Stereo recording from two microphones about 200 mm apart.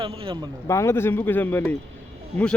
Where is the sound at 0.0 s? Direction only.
25° right (ahead or behind).